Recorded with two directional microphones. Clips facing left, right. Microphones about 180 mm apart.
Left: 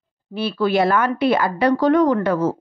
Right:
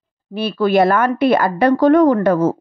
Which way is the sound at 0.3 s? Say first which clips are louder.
Right 3 dB; 50° right (ahead or behind).